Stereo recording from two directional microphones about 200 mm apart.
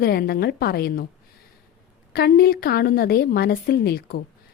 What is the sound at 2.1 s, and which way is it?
A woman's voice, 50° left (ahead or behind).